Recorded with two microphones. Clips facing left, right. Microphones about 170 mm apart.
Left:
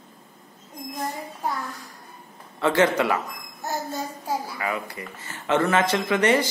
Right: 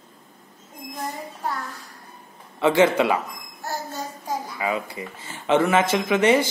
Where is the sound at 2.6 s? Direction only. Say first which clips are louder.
Right 3 dB; 15° right (ahead or behind).